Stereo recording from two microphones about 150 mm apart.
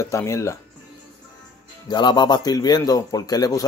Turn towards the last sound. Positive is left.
turn(degrees=25)  # may be behind; listen again after turning